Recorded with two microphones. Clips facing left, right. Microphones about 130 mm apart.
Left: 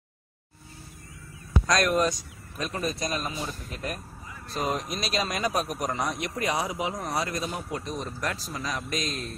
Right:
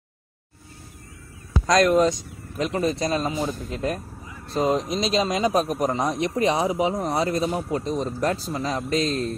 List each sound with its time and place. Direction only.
1.7 s a man's voice: 25° right (ahead or behind)